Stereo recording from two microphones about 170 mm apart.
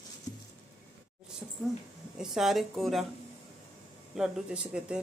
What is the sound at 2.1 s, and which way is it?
Speech, centre (ahead or behind).